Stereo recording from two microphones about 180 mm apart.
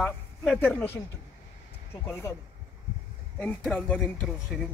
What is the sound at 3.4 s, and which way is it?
A man's voice, 10° left (ahead or behind).